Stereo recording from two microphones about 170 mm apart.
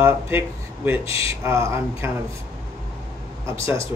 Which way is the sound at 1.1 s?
35° left (ahead or behind).